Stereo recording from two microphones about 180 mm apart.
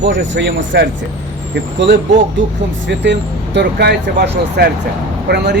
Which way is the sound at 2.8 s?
80° right.